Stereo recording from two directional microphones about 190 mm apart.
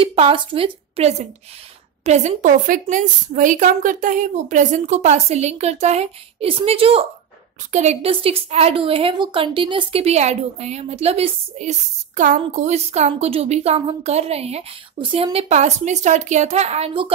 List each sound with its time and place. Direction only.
0.0 s a woman's voice: 30° right (ahead or behind)